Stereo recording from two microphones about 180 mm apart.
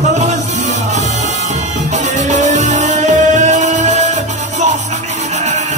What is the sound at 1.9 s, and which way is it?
Music, 40° right (ahead or behind).